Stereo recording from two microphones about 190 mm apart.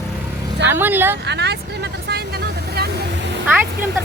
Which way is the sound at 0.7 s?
10° right (ahead or behind).